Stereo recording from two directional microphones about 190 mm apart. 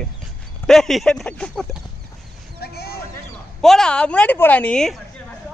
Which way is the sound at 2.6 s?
55° left (ahead or behind).